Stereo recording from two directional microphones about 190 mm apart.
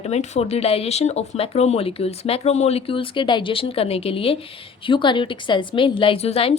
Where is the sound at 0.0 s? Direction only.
35° left (ahead or behind).